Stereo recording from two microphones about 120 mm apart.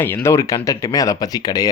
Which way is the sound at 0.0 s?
25° left (ahead or behind).